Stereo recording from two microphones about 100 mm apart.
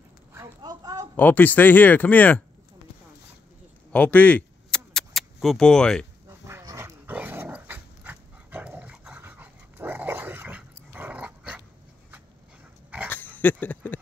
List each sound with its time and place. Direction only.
0.6 s a woman's voice: 40° right (ahead or behind)
1.1 s speech: 15° left (ahead or behind)
3.9 s a sound: 15° left (ahead or behind)
6.2 s dog: 30° right (ahead or behind)
7.1 s dog: 20° right (ahead or behind)
13.4 s speech: 15° left (ahead or behind)